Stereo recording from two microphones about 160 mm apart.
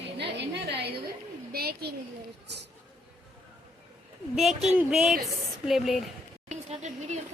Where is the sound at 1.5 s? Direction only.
75° right (ahead or behind).